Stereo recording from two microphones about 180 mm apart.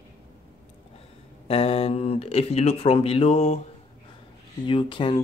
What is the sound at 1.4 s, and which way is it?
Speech, 35° left (ahead or behind).